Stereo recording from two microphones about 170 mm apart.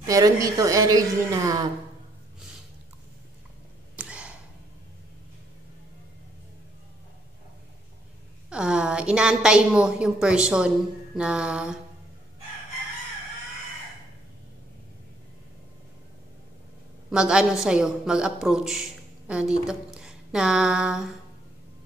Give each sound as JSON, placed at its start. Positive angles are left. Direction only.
{"t": 0.0, "sound": "a woman's voice", "side_deg": -20}
{"t": 3.9, "sound": "a sound", "side_deg": -5}
{"t": 8.5, "sound": "a woman's voice", "side_deg": -5}
{"t": 11.1, "sound": "mantra", "side_deg": -5}
{"t": 17.1, "sound": "a woman's voice", "side_deg": -5}